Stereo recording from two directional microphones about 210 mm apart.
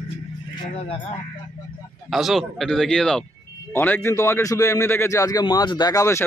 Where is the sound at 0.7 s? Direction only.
30° left (ahead or behind).